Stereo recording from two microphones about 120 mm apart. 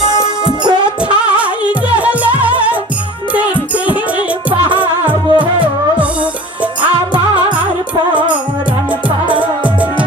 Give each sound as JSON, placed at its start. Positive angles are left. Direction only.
{"t": 1.2, "sound": "music", "side_deg": -10}
{"t": 4.5, "sound": "music", "side_deg": -45}
{"t": 4.8, "sound": "music", "side_deg": -15}